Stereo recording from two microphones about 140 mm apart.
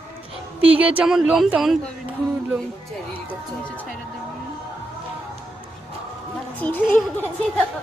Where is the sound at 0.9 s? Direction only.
5° right (ahead or behind).